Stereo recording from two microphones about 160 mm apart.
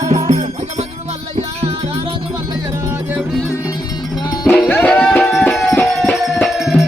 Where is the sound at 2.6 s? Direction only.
15° right (ahead or behind).